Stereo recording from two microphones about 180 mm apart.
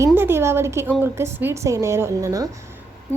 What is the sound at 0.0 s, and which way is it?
A woman's voice, 15° right (ahead or behind).